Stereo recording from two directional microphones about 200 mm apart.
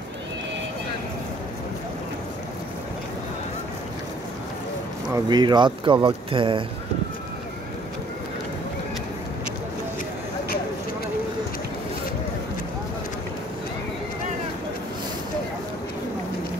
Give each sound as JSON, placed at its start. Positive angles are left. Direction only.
{"t": 5.1, "sound": "speech", "side_deg": -20}